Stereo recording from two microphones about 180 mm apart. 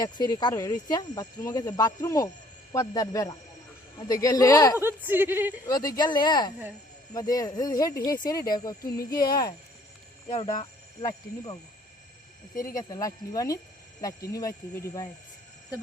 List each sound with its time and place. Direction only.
0.0 s speech: 20° left (ahead or behind)
4.8 s speech: 10° right (ahead or behind)
5.6 s speech: 20° left (ahead or behind)
10.2 s speech: 35° left (ahead or behind)
12.7 s speech: 20° left (ahead or behind)